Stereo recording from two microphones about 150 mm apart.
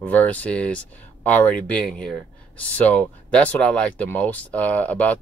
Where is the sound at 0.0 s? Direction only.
10° left (ahead or behind).